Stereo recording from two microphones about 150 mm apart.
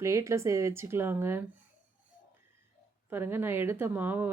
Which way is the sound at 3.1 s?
15° right (ahead or behind).